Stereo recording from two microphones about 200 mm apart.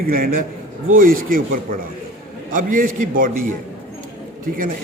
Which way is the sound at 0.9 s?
45° right (ahead or behind).